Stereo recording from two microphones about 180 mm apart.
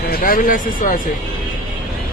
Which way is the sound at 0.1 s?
50° left (ahead or behind).